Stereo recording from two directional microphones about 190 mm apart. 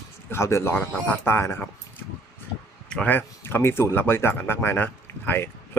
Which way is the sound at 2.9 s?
10° left (ahead or behind).